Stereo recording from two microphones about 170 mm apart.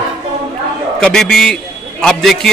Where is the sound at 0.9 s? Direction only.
5° left (ahead or behind).